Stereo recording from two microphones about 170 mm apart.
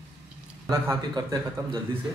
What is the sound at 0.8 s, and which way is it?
Speech, 25° right (ahead or behind).